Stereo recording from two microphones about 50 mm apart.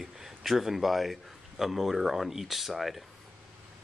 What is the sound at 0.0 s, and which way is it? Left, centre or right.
A man's voice, centre.